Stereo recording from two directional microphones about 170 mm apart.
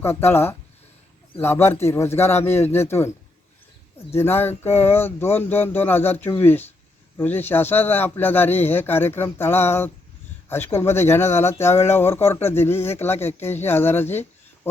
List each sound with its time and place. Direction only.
0.0 s speech: 15° left (ahead or behind)
4.1 s speech: 15° left (ahead or behind)